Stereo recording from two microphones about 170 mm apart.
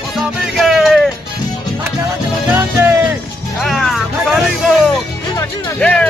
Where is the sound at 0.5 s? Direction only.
Centre (ahead or behind).